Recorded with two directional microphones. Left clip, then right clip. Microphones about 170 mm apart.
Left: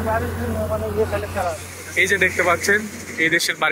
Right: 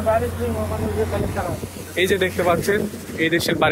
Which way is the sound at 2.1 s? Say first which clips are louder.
Left 2 dB; 20° right (ahead or behind).